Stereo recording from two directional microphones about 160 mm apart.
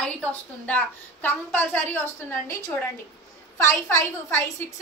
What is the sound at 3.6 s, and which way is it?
A woman's voice, 15° left (ahead or behind).